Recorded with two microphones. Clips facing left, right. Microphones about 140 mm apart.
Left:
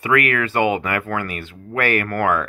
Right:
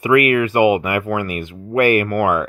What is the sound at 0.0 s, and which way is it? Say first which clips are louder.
Speech: right 5 dB; 15° right (ahead or behind).